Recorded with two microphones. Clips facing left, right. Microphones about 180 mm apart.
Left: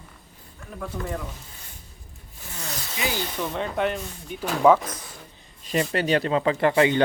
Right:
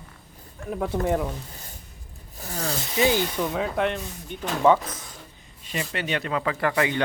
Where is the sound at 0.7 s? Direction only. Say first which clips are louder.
Right 7 dB; 60° right (ahead or behind).